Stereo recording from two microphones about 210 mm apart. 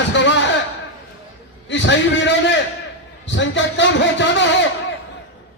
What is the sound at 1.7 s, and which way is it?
A man's voice, 60° left (ahead or behind).